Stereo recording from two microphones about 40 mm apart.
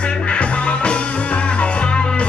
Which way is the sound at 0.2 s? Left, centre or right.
Left.